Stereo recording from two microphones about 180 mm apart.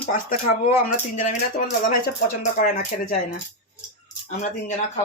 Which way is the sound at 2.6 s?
50° left (ahead or behind).